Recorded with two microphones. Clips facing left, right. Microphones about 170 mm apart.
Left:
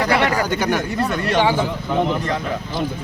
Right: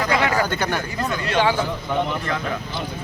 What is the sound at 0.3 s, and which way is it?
Speech, 15° left (ahead or behind).